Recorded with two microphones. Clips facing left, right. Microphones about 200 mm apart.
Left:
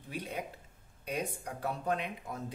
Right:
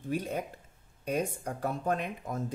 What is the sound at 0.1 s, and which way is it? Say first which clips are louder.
Speech: right 6 dB; 45° right (ahead or behind).